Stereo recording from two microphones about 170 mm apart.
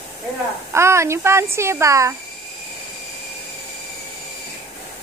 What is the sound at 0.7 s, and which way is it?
Speech, 15° right (ahead or behind).